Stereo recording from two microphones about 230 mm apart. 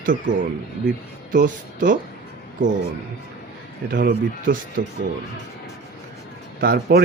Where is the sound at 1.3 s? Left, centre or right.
Right.